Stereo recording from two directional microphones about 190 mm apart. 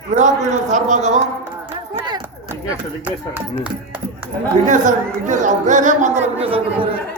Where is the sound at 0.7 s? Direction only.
40° right (ahead or behind).